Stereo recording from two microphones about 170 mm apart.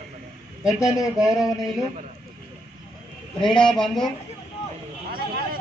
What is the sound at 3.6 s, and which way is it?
Speech, 5° left (ahead or behind).